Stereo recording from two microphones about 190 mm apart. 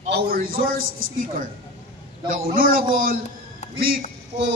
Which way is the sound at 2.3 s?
50° right (ahead or behind).